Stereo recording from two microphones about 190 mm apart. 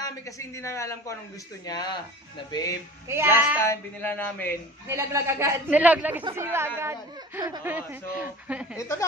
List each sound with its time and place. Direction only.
0.6 s speech: 15° left (ahead or behind)
1.7 s music: 20° left (ahead or behind)
3.1 s a man's voice: 10° right (ahead or behind)
3.6 s speech: 10° left (ahead or behind)
4.8 s a man's voice: 15° right (ahead or behind)
8.7 s speech: 15° left (ahead or behind)